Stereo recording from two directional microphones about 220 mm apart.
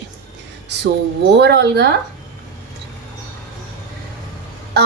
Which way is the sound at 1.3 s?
50° right (ahead or behind).